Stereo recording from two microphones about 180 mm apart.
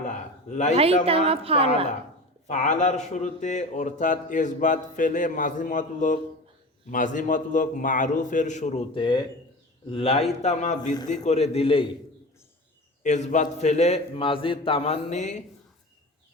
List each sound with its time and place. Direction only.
0.0 s a sound: 40° left (ahead or behind)
1.0 s a woman's voice: 30° right (ahead or behind)
2.5 s a man's voice: 40° left (ahead or behind)
13.0 s a man's voice: 40° left (ahead or behind)